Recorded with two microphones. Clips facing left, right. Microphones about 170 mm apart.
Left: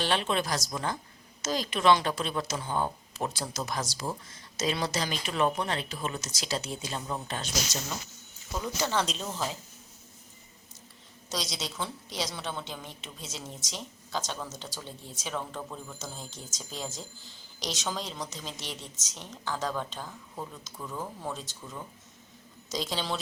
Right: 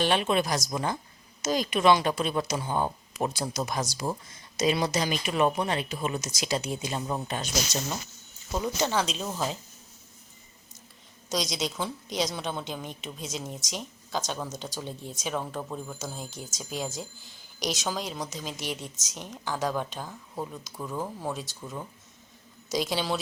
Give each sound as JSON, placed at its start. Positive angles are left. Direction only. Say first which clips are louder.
{"t": 0.0, "sound": "a woman's voice", "louder": "right 4 dB", "side_deg": -15}
{"t": 8.5, "sound": "speech", "louder": "right 3 dB", "side_deg": -20}
{"t": 9.0, "sound": "a woman's voice", "louder": "right 2 dB", "side_deg": -5}
{"t": 11.3, "sound": "a woman's voice", "louder": "right 6 dB", "side_deg": -15}